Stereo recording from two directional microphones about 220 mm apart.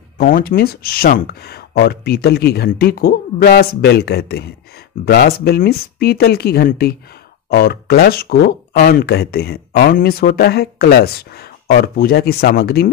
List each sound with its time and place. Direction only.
0.2 s speech: 40° left (ahead or behind)